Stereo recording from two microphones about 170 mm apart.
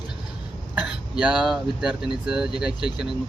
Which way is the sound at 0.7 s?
5° right (ahead or behind).